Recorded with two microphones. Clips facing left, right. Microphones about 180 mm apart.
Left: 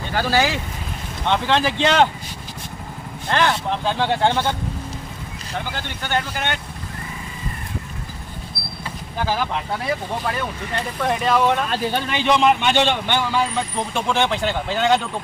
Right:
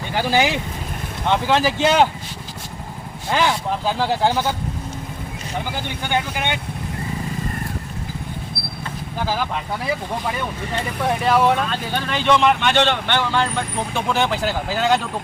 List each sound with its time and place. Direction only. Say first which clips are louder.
0.1 s speech: right 1 dB; 15° right (ahead or behind)
3.2 s speech: even; 5° right (ahead or behind)
5.7 s speech: right 1 dB; 15° right (ahead or behind)
9.8 s speech: right 2 dB; 5° right (ahead or behind)
12.1 s speech: right 1 dB; 15° left (ahead or behind); by 15.0 s centre (ahead or behind)